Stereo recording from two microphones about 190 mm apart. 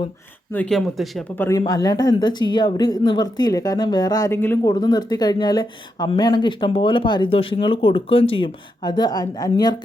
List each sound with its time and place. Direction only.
0.5 s speech: 5° left (ahead or behind)
1.4 s speech: 15° left (ahead or behind)